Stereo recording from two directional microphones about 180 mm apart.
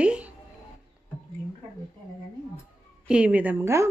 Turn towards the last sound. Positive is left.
turn(degrees=-15)  # may be behind; listen again after turning